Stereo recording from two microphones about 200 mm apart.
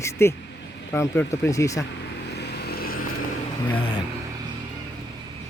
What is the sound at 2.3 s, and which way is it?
Vehicle, 55° left (ahead or behind).